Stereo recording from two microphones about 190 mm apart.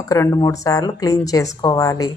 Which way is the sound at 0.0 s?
15° left (ahead or behind).